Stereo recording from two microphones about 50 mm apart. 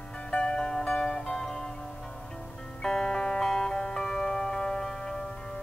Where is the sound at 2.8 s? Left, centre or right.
Centre.